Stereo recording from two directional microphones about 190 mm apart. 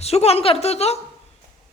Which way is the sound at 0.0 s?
35° left (ahead or behind).